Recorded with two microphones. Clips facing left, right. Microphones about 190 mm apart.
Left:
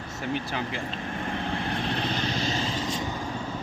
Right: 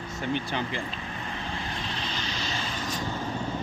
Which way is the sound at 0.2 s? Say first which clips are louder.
Right 1 dB; 5° left (ahead or behind).